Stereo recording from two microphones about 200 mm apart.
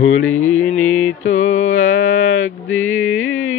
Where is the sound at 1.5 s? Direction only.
35° left (ahead or behind).